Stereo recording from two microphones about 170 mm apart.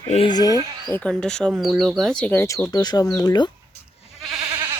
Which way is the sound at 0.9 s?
5° left (ahead or behind).